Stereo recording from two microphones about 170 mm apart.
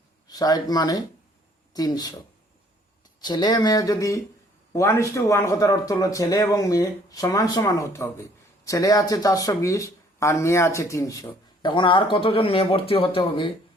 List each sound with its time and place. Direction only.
0.3 s speech: 20° left (ahead or behind)
3.2 s speech: 25° left (ahead or behind)